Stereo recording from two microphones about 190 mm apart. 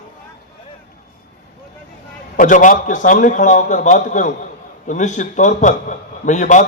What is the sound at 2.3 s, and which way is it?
A man's voice, 45° left (ahead or behind).